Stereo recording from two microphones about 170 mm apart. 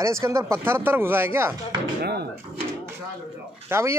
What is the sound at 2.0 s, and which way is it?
Speech, 70° right (ahead or behind).